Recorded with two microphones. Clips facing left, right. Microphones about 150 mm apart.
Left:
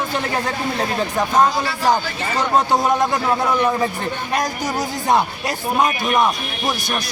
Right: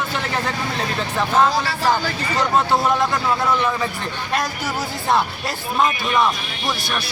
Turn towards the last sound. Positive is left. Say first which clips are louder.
# left 1 dB
turn(degrees=20)  # may be behind; listen again after turning